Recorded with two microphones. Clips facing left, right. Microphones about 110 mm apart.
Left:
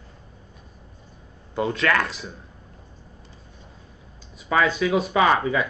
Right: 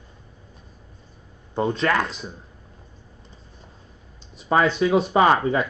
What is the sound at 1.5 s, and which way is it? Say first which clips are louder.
Speech: right 1 dB; 25° right (ahead or behind).